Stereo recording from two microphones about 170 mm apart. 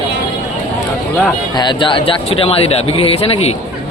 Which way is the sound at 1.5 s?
30° left (ahead or behind).